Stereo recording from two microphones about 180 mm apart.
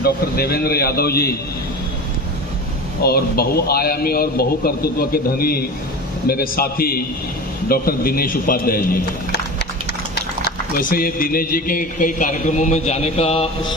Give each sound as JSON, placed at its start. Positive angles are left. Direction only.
{"t": 0.0, "sound": "a man's voice", "side_deg": 60}
{"t": 3.0, "sound": "a man's voice", "side_deg": 60}
{"t": 10.8, "sound": "speech", "side_deg": 55}